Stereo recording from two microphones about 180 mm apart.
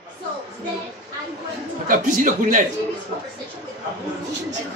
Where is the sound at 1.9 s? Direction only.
45° right (ahead or behind).